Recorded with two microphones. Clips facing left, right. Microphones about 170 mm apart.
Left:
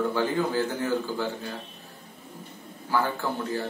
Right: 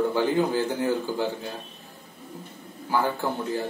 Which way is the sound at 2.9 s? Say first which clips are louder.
Right 2 dB; 15° right (ahead or behind).